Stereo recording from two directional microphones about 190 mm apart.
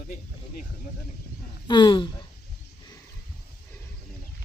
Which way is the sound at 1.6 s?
25° left (ahead or behind).